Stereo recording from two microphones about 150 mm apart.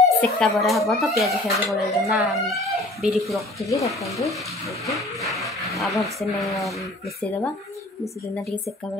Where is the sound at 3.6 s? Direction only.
20° left (ahead or behind).